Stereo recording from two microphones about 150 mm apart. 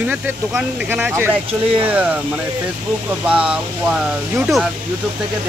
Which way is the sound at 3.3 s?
5° right (ahead or behind).